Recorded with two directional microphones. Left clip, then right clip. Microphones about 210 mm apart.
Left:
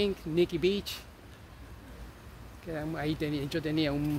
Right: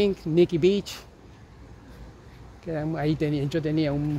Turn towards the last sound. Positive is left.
turn(degrees=-20)  # may be behind; listen again after turning